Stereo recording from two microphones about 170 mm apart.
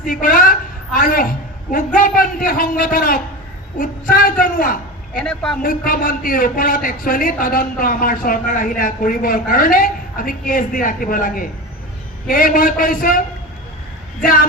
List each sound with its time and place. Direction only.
0.0 s a man's voice: 55° left (ahead or behind)
5.2 s a man's voice: 5° left (ahead or behind)
5.6 s a man's voice: 55° left (ahead or behind)